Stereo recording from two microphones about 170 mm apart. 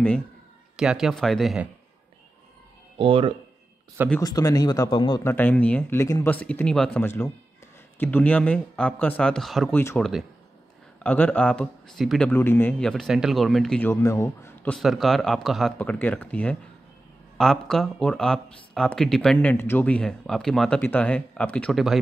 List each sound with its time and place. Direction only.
0.7 s speech: 5° right (ahead or behind)
3.0 s speech: 30° right (ahead or behind)
4.2 s speech: 20° left (ahead or behind)
5.2 s speech: 10° left (ahead or behind)
12.3 s speech: 10° left (ahead or behind)